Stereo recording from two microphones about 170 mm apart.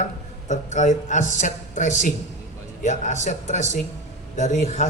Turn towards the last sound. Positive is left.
turn(degrees=45)  # may be behind; listen again after turning